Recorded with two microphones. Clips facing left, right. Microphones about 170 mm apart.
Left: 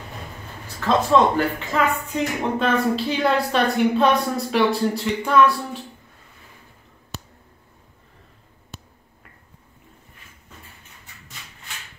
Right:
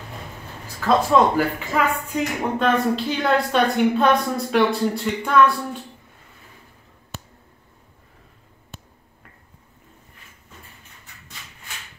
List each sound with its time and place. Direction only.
0.7 s speech: 5° right (ahead or behind)